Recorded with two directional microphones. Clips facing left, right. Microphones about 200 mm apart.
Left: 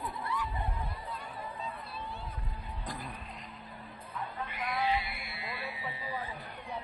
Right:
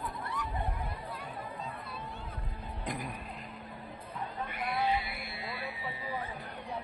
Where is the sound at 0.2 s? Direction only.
45° right (ahead or behind).